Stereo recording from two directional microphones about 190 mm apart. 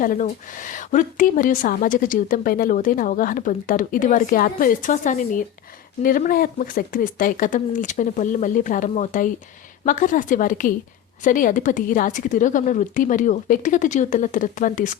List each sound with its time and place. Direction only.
0.0 s a woman's voice: 45° left (ahead or behind)